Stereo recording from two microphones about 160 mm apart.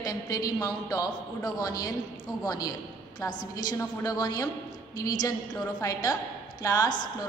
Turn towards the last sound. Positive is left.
turn(degrees=25)  # may be behind; listen again after turning